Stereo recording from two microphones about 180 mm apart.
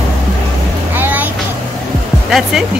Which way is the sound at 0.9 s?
10° right (ahead or behind).